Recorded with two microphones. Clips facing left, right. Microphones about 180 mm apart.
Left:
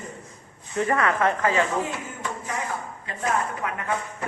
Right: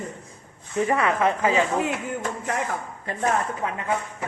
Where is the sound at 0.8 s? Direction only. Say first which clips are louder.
Right 1 dB; 15° right (ahead or behind).